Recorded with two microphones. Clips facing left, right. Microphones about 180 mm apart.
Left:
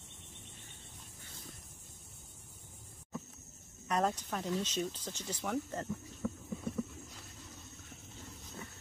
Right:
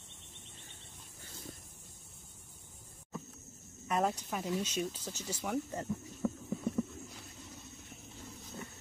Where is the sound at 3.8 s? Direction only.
5° right (ahead or behind).